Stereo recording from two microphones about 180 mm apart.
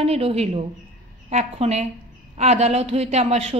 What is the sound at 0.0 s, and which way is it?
Speech, 35° right (ahead or behind).